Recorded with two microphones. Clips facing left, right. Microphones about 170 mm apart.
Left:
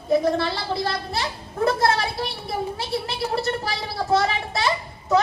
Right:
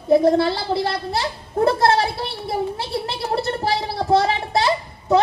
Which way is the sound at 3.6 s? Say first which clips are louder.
Right 6 dB; 30° right (ahead or behind).